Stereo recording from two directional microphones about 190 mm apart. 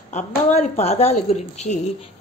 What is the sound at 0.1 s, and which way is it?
Speech, 35° left (ahead or behind).